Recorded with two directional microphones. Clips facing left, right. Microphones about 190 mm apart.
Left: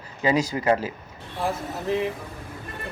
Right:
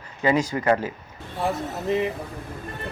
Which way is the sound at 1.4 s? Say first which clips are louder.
Right 1 dB; centre (ahead or behind).